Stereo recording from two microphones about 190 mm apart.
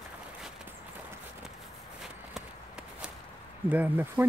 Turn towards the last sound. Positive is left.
turn(degrees=-10)  # may be behind; listen again after turning